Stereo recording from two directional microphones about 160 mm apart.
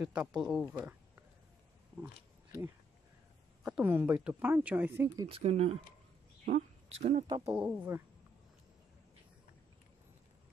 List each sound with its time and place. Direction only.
0.0 s speech: 5° right (ahead or behind)
3.6 s speech: 10° right (ahead or behind)
5.3 s a woman's voice: 40° right (ahead or behind)
7.4 s speech: 10° right (ahead or behind)